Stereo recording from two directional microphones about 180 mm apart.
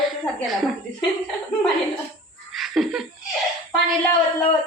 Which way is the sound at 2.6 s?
Centre (ahead or behind).